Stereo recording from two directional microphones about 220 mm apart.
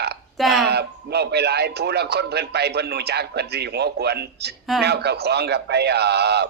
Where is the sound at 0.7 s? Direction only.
50° right (ahead or behind).